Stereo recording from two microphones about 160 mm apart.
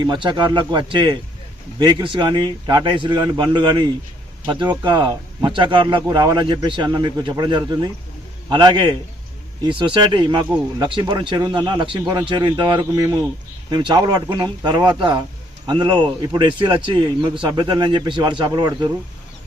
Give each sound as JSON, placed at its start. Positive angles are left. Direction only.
{"t": 0.0, "sound": "speech", "side_deg": -30}